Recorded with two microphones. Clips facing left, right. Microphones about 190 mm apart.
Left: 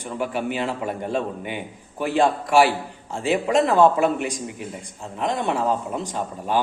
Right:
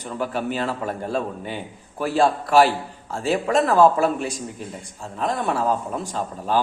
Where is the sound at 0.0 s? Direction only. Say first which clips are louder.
Even; 15° left (ahead or behind).